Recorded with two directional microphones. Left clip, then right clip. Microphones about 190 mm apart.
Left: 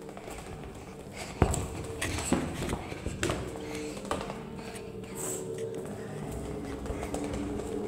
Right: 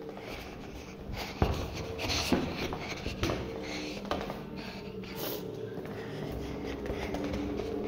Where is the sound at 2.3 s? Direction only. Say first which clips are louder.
Left 2 dB; 20° left (ahead or behind).